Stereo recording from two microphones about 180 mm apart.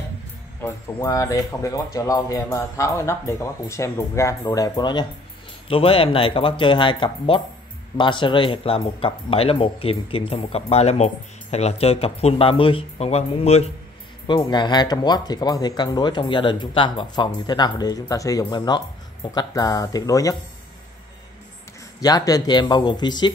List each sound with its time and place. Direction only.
0.9 s speech: 20° left (ahead or behind)
22.0 s speech: 20° left (ahead or behind)